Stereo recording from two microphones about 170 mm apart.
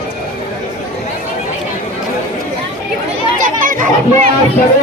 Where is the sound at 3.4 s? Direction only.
50° right (ahead or behind).